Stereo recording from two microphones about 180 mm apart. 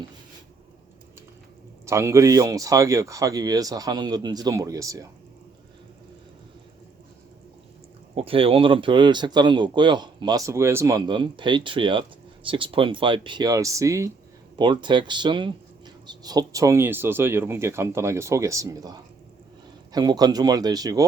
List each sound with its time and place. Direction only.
1.9 s speech: 15° right (ahead or behind)
8.1 s speech: 30° right (ahead or behind)